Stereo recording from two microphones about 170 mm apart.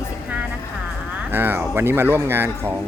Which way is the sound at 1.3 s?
10° right (ahead or behind).